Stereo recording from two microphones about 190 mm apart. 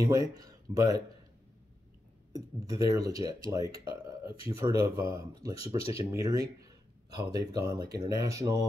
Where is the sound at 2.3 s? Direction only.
15° right (ahead or behind).